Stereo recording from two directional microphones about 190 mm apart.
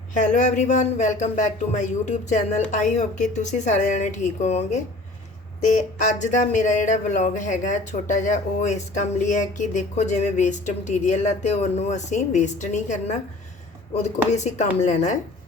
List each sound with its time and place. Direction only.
0.1 s speech: 40° left (ahead or behind)
14.3 s speech: 40° left (ahead or behind)